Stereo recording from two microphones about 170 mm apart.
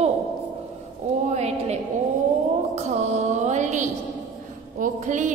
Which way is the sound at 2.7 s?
40° right (ahead or behind).